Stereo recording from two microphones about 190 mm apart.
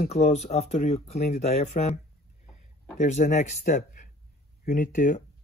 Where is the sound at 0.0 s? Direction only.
35° left (ahead or behind).